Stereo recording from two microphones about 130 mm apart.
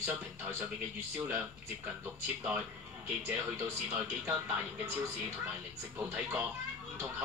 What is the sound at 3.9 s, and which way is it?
Speech, 15° right (ahead or behind).